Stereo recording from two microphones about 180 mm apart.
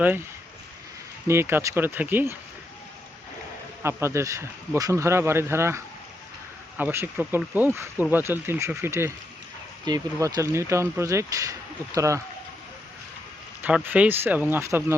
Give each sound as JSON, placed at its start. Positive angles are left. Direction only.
{"t": 1.3, "sound": "speech", "side_deg": -15}
{"t": 3.8, "sound": "speech", "side_deg": -15}
{"t": 13.6, "sound": "speech", "side_deg": -10}